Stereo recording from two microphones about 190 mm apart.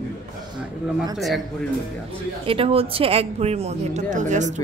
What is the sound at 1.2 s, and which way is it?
Speech, centre (ahead or behind).